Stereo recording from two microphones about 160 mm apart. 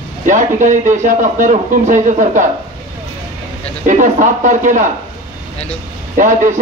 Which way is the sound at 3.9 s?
50° right (ahead or behind).